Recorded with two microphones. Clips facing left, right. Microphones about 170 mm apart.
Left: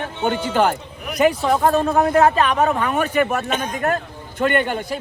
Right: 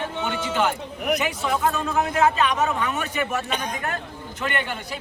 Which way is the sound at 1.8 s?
55° left (ahead or behind).